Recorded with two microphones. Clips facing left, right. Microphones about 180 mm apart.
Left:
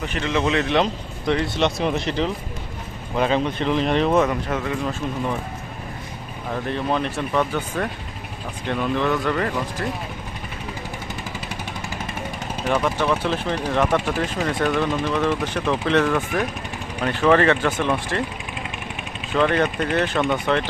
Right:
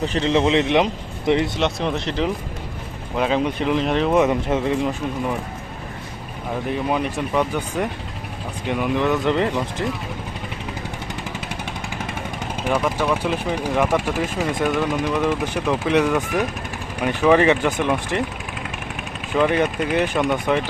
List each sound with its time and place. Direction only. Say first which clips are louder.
0.0 s speech: right 4 dB; 30° right (ahead or behind)
1.5 s speech: left 1 dB; centre (ahead or behind)
4.1 s speech: right 2 dB; 20° right (ahead or behind)
6.7 s speech: right 1 dB; 10° right (ahead or behind)
12.6 s speech: even; 10° right (ahead or behind)
19.4 s speech: right 1 dB; 10° right (ahead or behind)